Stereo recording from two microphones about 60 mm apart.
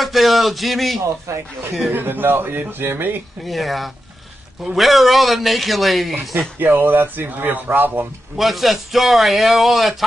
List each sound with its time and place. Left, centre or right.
0.0 s speech: centre
1.2 s speech: right
1.9 s speech: right
3.4 s a man's voice: centre
6.6 s speech: right
8.4 s a man's voice: centre